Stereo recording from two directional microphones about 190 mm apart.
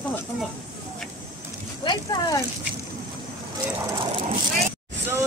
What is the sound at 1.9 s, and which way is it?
Speech, 20° left (ahead or behind).